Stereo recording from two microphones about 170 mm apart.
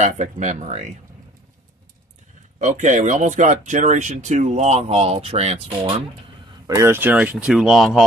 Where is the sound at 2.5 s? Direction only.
45° right (ahead or behind).